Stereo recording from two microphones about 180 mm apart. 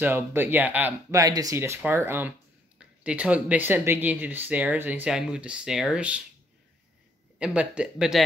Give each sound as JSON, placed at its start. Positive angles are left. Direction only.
{"t": 0.0, "sound": "speech", "side_deg": -10}
{"t": 1.2, "sound": "speech", "side_deg": -20}
{"t": 7.3, "sound": "speech", "side_deg": -5}